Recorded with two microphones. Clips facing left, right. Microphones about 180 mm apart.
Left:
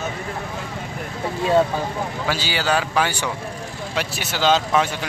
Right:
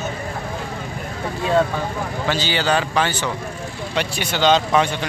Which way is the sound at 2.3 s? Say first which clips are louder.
Right 3 dB; 5° left (ahead or behind).